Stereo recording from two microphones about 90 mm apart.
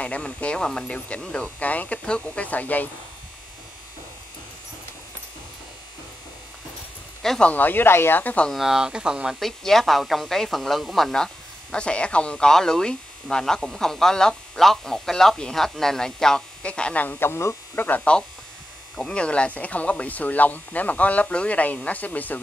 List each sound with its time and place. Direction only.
0.0 s speech: 15° left (ahead or behind)
7.2 s speech: 10° left (ahead or behind)
8.5 s speech: 5° right (ahead or behind); by 17.8 s 30° left (ahead or behind)
17.8 s speech: 15° left (ahead or behind)